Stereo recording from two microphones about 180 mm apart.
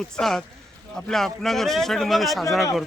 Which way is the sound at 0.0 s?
Centre (ahead or behind).